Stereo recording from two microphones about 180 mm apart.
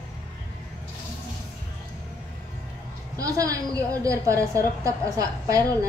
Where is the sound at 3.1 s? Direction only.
20° right (ahead or behind).